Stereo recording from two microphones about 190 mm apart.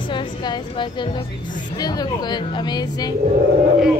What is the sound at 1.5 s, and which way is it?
Speech, 45° left (ahead or behind).